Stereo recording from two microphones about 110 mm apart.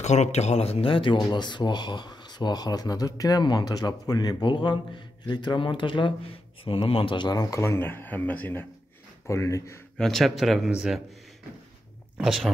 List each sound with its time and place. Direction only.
0.0 s speech: 90° left; by 8.6 s 15° left (ahead or behind)
9.3 s speech: 25° left (ahead or behind)
9.9 s speech: 5° left (ahead or behind)
12.2 s speech: 5° right (ahead or behind)